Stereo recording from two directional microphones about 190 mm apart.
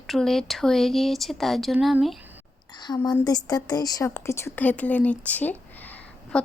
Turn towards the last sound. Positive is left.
turn(degrees=10)  # may be behind; listen again after turning